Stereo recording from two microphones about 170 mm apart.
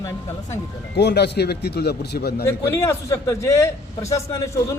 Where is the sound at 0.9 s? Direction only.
80° left.